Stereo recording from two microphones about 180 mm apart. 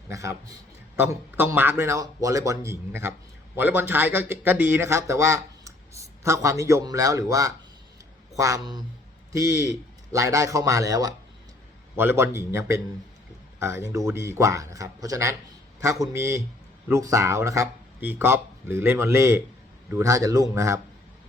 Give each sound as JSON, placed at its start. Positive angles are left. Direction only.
{"t": 0.1, "sound": "speech", "side_deg": -15}